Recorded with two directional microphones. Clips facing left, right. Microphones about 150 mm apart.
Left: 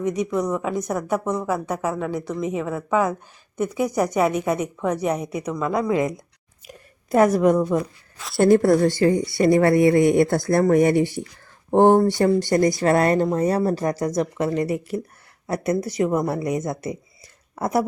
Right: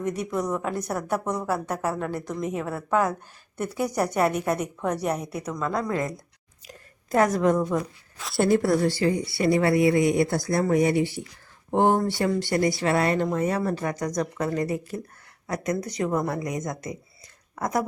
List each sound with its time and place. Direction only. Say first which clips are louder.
0.2 s a woman's voice: left 5 dB; 10° right (ahead or behind)
0.5 s a woman's voice: left 4 dB; 10° left (ahead or behind)
1.1 s a woman's voice: left 3 dB; 10° right (ahead or behind)
1.6 s a woman's voice: left 3 dB; 10° left (ahead or behind)
6.7 s a sound: left 4 dB; 20° left (ahead or behind)
7.5 s a woman's voice: left 4 dB; 5° left (ahead or behind)
8.4 s a woman's voice: left 6 dB; 50° left (ahead or behind); by 17.8 s 30° left (ahead or behind)